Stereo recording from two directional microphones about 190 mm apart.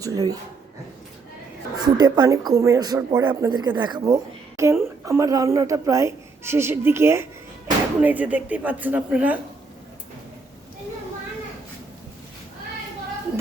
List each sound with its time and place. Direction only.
0.0 s speech: 20° right (ahead or behind)
1.8 s a woman's voice: 20° right (ahead or behind)